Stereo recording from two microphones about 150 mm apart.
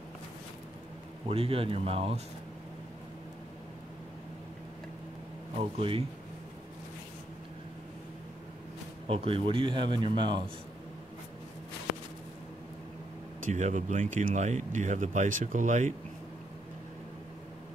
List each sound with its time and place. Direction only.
1.2 s a man's voice: 40° right (ahead or behind)
5.6 s a man's voice: 40° right (ahead or behind)
9.0 s a man's voice: 40° right (ahead or behind)
13.4 s speech: 50° right (ahead or behind)